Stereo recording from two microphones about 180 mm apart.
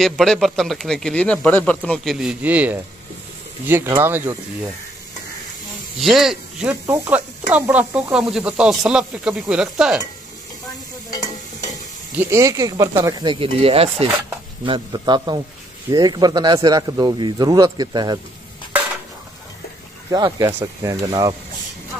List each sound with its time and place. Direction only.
0.0 s speech: centre (ahead or behind)
5.9 s speech: centre (ahead or behind)
12.2 s speech: 15° right (ahead or behind)
20.1 s speech: 20° right (ahead or behind)